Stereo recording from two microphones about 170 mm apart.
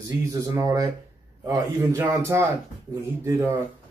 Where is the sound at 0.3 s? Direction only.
20° right (ahead or behind).